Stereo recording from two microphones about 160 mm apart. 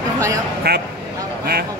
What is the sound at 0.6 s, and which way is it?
Speech, 70° right (ahead or behind).